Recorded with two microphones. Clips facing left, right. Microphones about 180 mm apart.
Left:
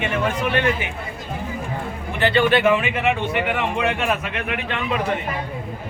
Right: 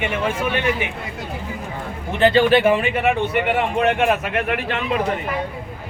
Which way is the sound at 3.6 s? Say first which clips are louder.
Right 4 dB; 45° right (ahead or behind).